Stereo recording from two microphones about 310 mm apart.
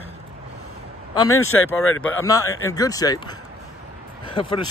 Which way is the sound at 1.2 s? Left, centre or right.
Left.